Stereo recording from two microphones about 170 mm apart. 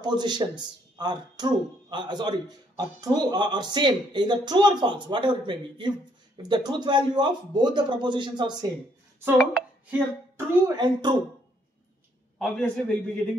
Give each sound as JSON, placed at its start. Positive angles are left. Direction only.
{"t": 0.0, "sound": "speech", "side_deg": -25}
{"t": 9.2, "sound": "a sound", "side_deg": -10}
{"t": 10.8, "sound": "speech", "side_deg": -25}
{"t": 12.4, "sound": "a man's voice", "side_deg": 0}